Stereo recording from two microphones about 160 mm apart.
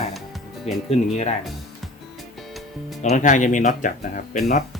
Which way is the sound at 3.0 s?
50° left (ahead or behind).